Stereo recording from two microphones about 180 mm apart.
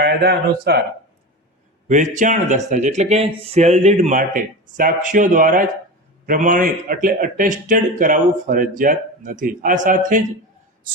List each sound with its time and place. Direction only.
0.0 s speech: 65° right (ahead or behind)
2.1 s a man's voice: 45° right (ahead or behind)